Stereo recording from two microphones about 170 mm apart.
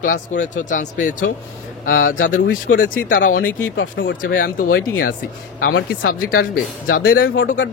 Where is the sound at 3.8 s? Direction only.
90° left.